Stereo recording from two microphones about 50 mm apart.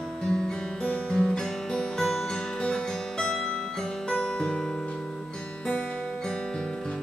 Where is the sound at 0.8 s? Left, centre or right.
Centre.